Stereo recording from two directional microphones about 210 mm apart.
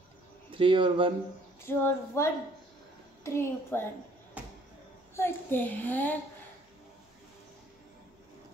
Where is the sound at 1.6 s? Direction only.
10° left (ahead or behind).